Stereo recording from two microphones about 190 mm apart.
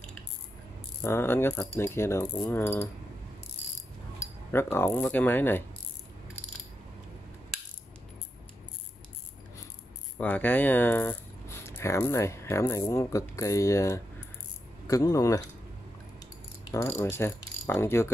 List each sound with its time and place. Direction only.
1.0 s speech: 10° left (ahead or behind)
4.5 s speech: 10° left (ahead or behind)
10.1 s speech: 10° left (ahead or behind)
16.7 s speech: 15° left (ahead or behind)